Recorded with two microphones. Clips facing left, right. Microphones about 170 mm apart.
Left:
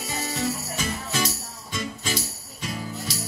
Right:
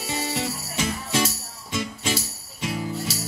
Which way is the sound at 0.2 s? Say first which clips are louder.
Left 3 dB; 25° right (ahead or behind).